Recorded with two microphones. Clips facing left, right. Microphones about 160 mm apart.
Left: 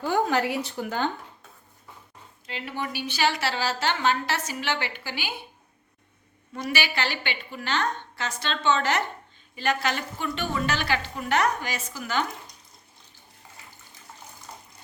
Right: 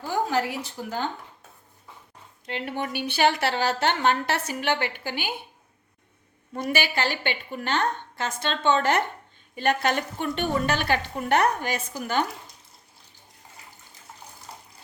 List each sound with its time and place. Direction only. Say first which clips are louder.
0.0 s speech: left 2 dB; 65° left (ahead or behind)
2.5 s a woman's voice: right 3 dB; 55° right (ahead or behind)
6.5 s a woman's voice: right 2 dB; 50° right (ahead or behind)